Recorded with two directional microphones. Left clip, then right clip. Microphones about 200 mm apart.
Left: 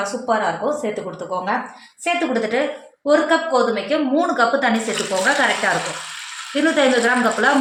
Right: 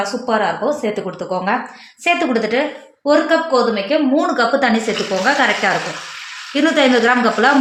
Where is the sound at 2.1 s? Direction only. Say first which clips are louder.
Right 3 dB; 50° right (ahead or behind).